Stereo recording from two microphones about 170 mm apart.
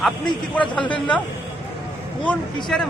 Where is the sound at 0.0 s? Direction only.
5° left (ahead or behind).